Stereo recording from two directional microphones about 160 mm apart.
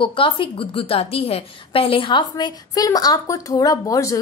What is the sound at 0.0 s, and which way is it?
A woman's voice, 30° left (ahead or behind).